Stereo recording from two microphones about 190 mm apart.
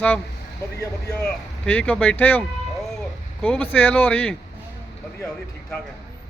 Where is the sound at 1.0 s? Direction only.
5° left (ahead or behind).